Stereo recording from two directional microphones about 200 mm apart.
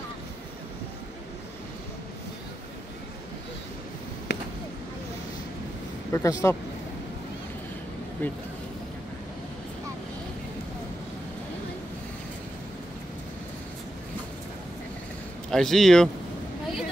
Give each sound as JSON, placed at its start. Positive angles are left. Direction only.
{"t": 4.3, "sound": "a sound", "side_deg": 60}
{"t": 6.1, "sound": "speech", "side_deg": 15}
{"t": 8.2, "sound": "speech", "side_deg": 10}
{"t": 15.5, "sound": "speech", "side_deg": 0}